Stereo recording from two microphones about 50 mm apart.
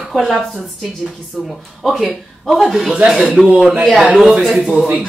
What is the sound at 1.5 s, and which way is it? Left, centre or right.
A woman's voice, centre.